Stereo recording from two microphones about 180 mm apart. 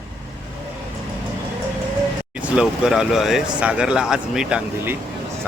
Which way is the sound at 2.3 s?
5° right (ahead or behind).